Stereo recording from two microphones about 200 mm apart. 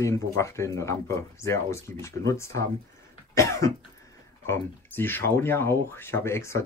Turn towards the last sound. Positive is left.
turn(degrees=15)  # may be behind; listen again after turning